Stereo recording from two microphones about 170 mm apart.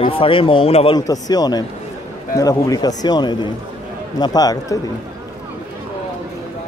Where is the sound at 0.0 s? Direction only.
30° left (ahead or behind).